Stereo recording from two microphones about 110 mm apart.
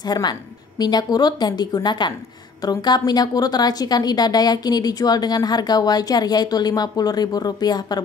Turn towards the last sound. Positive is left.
turn(degrees=40)  # may be behind; listen again after turning